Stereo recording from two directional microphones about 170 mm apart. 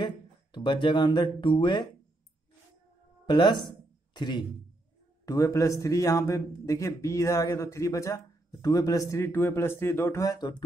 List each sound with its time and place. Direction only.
0.0 s a man's voice: 25° left (ahead or behind)
3.3 s a man's voice: 25° left (ahead or behind)